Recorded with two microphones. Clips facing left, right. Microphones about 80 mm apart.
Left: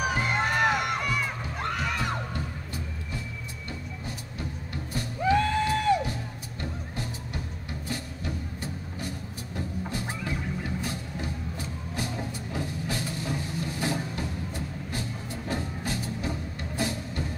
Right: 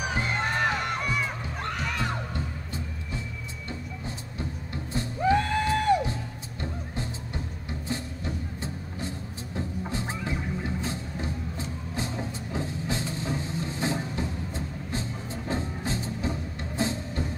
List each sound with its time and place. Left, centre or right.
0.0 s music: centre
2.3 s music: right
5.2 s music: right